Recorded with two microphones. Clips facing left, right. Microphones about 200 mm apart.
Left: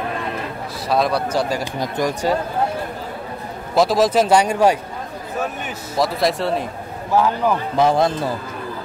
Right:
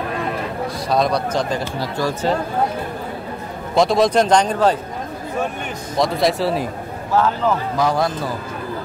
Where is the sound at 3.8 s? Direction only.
5° left (ahead or behind).